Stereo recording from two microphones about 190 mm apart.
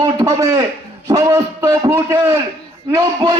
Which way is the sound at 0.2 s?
20° right (ahead or behind).